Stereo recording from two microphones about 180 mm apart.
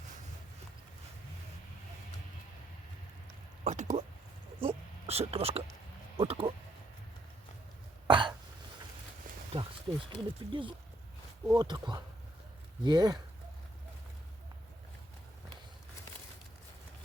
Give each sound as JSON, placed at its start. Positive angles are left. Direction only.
{"t": 3.6, "sound": "speech", "side_deg": -40}
{"t": 8.0, "sound": "cough", "side_deg": -25}
{"t": 10.1, "sound": "speech", "side_deg": -25}